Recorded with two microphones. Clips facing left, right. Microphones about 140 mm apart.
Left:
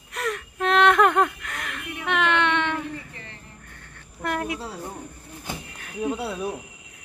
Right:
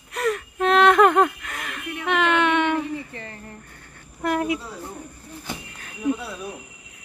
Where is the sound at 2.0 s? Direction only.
Centre (ahead or behind).